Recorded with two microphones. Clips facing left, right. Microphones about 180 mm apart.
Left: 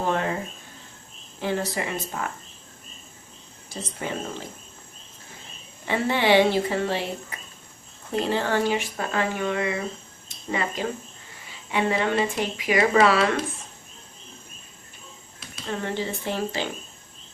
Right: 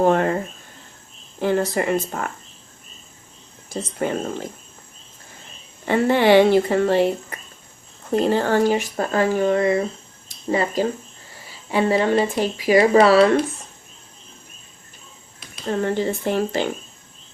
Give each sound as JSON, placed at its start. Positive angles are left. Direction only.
{"t": 0.0, "sound": "a sound", "side_deg": -50}
{"t": 1.4, "sound": "speech", "side_deg": -50}
{"t": 4.0, "sound": "speech", "side_deg": -50}
{"t": 5.9, "sound": "speech", "side_deg": -50}
{"t": 15.6, "sound": "speech", "side_deg": -45}